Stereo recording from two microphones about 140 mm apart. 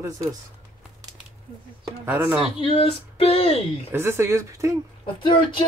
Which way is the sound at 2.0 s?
15° right (ahead or behind).